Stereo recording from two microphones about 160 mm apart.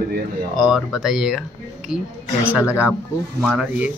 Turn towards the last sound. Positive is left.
turn(degrees=-10)  # may be behind; listen again after turning